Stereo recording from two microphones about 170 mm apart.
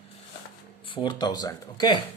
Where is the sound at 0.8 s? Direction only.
30° left (ahead or behind).